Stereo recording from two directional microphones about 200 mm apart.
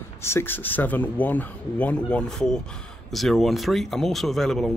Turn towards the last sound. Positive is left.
turn(degrees=0)  # may be behind; listen again after turning